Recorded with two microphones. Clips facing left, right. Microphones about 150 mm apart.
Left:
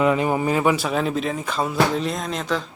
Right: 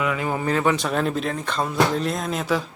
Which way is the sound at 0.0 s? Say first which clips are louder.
Left 6 dB; 30° left (ahead or behind).